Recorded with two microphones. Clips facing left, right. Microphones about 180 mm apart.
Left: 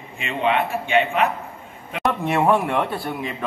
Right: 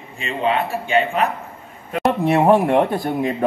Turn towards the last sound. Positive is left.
turn(degrees=-45)  # may be behind; listen again after turning